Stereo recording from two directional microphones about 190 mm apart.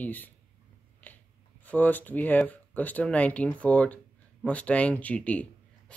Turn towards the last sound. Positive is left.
turn(degrees=5)  # may be behind; listen again after turning